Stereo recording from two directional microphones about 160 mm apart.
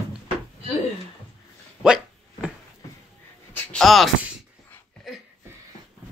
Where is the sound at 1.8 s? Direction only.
5° right (ahead or behind).